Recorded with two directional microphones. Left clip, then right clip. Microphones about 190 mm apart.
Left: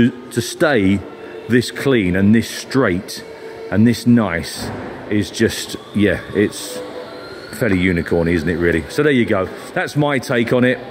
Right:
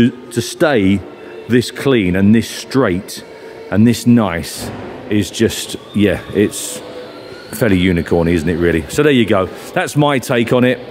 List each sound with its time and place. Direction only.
0.0 s speech: 15° right (ahead or behind)
7.5 s speech: 20° right (ahead or behind)